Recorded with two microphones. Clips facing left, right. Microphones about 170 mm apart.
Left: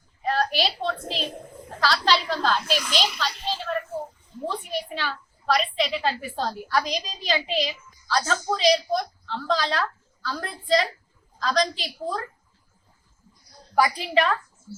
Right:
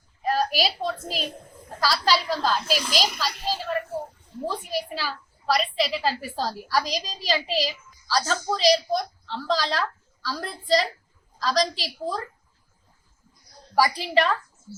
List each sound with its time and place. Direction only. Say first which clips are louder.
0.3 s a sound: even; 10° right (ahead or behind)
1.8 s a woman's voice: even; 10° right (ahead or behind)
2.9 s a child's voice: even; 40° right (ahead or behind)
4.4 s a woman's voice: right 1 dB; 5° right (ahead or behind)
13.7 s a woman's voice: even; centre (ahead or behind)